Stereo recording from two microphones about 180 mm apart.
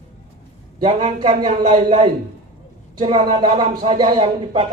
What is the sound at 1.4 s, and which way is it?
Speech, 25° right (ahead or behind).